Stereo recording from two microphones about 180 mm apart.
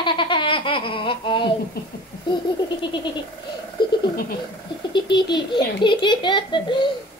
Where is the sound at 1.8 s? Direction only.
60° left (ahead or behind).